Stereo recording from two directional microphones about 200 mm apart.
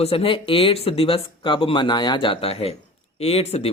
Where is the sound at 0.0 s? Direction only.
30° left (ahead or behind).